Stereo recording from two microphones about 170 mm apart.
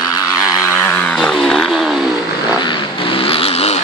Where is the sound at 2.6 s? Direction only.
30° left (ahead or behind).